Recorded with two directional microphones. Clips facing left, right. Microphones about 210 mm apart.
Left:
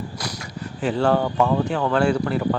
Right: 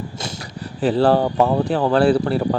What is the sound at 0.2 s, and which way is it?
Speech, 30° right (ahead or behind).